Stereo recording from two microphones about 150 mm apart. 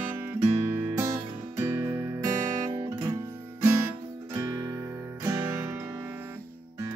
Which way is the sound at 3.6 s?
20° right (ahead or behind).